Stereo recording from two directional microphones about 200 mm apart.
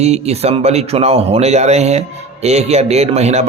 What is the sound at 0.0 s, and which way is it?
A man's voice, 35° right (ahead or behind).